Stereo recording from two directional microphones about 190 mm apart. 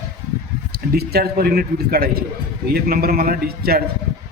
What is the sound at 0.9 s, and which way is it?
A man's voice, 55° right (ahead or behind).